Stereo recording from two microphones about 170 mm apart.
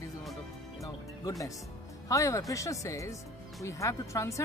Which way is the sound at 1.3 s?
20° left (ahead or behind).